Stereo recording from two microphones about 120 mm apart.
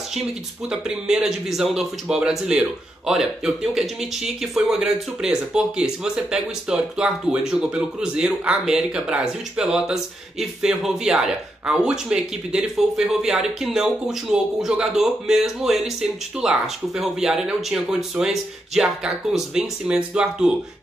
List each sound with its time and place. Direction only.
0.7 s speech: 5° right (ahead or behind)